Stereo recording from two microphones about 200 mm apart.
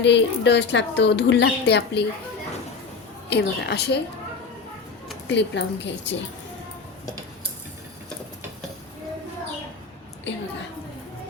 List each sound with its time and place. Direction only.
0.0 s a woman's voice: 60° left (ahead or behind)
3.2 s a woman's voice: 55° left (ahead or behind)
5.3 s a woman's voice: 60° left (ahead or behind)